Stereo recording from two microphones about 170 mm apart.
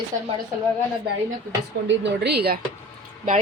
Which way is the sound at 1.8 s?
85° right.